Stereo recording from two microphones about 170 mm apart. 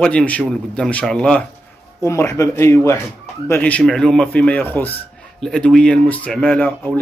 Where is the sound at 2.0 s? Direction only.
15° left (ahead or behind).